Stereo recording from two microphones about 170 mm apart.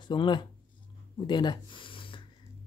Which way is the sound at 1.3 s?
25° left (ahead or behind).